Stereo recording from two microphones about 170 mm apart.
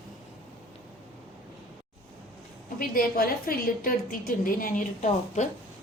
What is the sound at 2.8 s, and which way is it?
A woman's voice, 60° left (ahead or behind).